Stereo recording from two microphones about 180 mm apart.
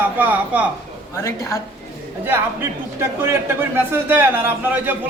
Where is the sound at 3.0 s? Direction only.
15° right (ahead or behind).